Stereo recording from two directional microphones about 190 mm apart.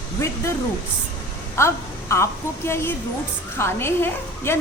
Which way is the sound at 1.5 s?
15° left (ahead or behind).